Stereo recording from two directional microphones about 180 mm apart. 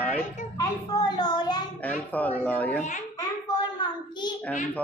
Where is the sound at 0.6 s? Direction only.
20° left (ahead or behind).